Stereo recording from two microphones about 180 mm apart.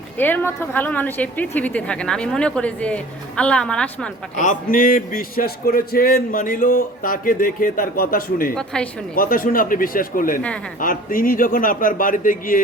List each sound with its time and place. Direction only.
0.2 s a woman's voice: 10° left (ahead or behind)
4.4 s a man's voice: 45° left (ahead or behind)
8.5 s a woman's voice: 5° left (ahead or behind)
9.1 s a man's voice: 50° left (ahead or behind)